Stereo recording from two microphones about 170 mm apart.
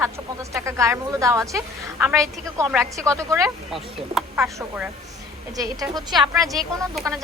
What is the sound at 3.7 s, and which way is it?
Speech, centre (ahead or behind).